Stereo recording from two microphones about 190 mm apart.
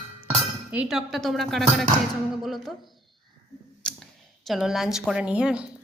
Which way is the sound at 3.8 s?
5° left (ahead or behind).